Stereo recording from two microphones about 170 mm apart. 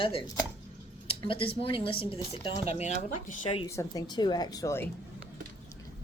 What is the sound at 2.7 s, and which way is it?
Speech, 45° left (ahead or behind).